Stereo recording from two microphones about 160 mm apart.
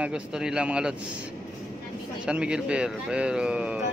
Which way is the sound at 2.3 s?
5° right (ahead or behind).